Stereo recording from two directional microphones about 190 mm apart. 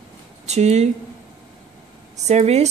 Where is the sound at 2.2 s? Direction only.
35° right (ahead or behind).